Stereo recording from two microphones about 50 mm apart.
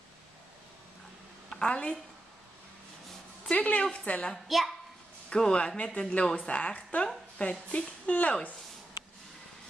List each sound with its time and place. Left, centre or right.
1.5 s a woman's voice: centre
3.4 s a woman's voice: left
4.5 s a woman's voice: centre
5.3 s a woman's voice: centre